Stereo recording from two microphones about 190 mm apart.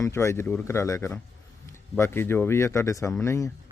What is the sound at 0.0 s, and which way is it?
Speech, 15° left (ahead or behind).